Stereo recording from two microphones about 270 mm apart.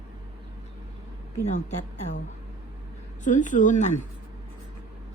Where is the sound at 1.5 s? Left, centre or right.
Left.